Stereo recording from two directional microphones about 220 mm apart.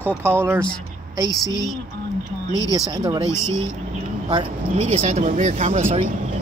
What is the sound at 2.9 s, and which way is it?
Speech, 20° right (ahead or behind).